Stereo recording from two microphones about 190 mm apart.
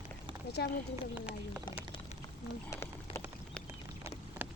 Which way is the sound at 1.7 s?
25° left (ahead or behind).